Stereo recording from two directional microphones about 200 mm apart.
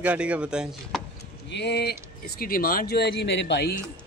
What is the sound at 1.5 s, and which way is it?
Speech, 55° left (ahead or behind).